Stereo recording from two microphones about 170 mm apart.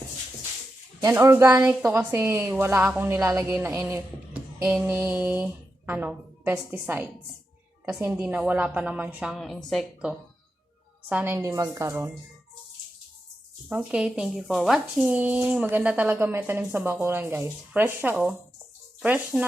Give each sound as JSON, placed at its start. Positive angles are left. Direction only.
{"t": 1.0, "sound": "speech", "side_deg": -15}
{"t": 13.7, "sound": "speech", "side_deg": -5}